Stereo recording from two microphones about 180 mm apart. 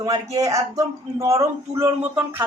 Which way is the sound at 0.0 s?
20° right (ahead or behind).